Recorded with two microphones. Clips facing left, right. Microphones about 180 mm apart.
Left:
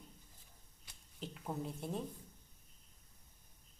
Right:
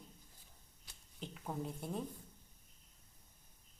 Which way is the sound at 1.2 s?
Centre (ahead or behind).